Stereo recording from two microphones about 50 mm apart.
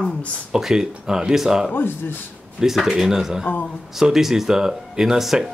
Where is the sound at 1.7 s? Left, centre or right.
Left.